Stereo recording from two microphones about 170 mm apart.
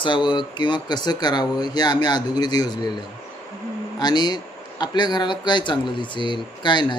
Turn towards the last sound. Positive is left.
turn(degrees=25)  # may be behind; listen again after turning